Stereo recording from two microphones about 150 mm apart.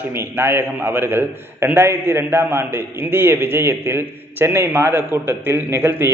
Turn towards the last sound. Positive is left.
turn(degrees=-15)  # may be behind; listen again after turning